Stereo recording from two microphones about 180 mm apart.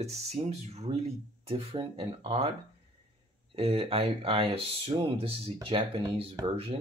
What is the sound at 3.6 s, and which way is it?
Speech, 30° right (ahead or behind).